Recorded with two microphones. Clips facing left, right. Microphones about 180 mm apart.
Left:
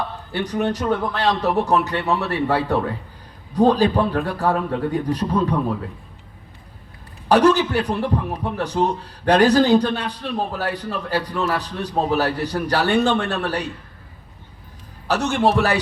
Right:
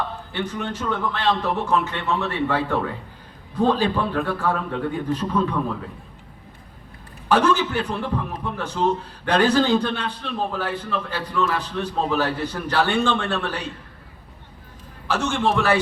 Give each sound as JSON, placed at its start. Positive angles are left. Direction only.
{"t": 0.3, "sound": "a man's voice", "side_deg": 40}
{"t": 7.3, "sound": "a man's voice", "side_deg": 40}
{"t": 15.0, "sound": "a man's voice", "side_deg": 40}